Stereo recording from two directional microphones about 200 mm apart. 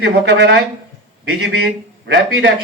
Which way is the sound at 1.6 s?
55° right (ahead or behind).